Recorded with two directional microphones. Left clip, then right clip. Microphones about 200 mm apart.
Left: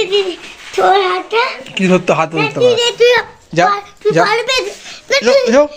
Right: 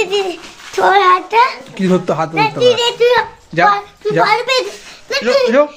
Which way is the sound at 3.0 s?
35° left (ahead or behind).